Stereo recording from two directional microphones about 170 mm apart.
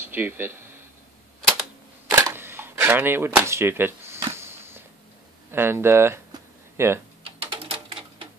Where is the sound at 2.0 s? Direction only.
15° right (ahead or behind).